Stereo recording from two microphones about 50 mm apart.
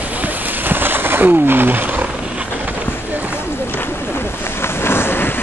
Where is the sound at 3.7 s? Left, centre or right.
Left.